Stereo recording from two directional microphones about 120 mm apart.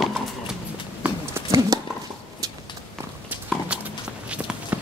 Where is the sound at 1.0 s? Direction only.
15° right (ahead or behind).